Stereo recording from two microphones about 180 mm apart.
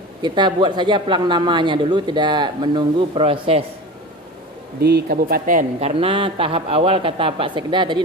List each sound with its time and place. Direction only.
0.2 s speech: 25° right (ahead or behind)
4.7 s speech: 60° right (ahead or behind); by 8.0 s 25° right (ahead or behind)